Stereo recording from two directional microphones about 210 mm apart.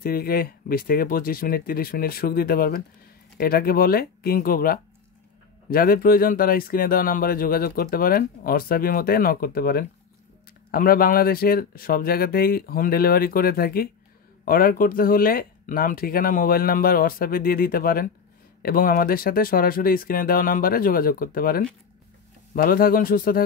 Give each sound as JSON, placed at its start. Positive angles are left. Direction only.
{"t": 0.0, "sound": "speech", "side_deg": 45}